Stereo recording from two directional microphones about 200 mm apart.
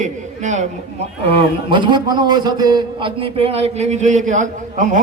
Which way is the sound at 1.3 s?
25° right (ahead or behind).